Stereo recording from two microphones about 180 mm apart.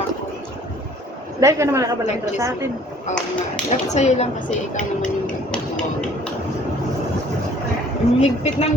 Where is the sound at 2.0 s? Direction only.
40° left (ahead or behind).